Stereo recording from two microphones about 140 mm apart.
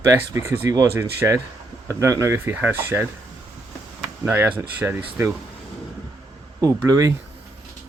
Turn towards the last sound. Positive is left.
turn(degrees=-25)  # may be behind; listen again after turning